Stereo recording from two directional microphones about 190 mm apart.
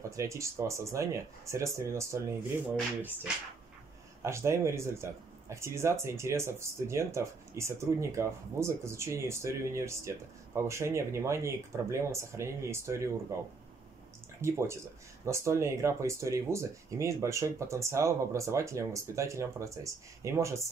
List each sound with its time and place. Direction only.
0.1 s speech: 15° right (ahead or behind)
4.2 s speech: 15° right (ahead or behind)
14.4 s speech: 15° right (ahead or behind)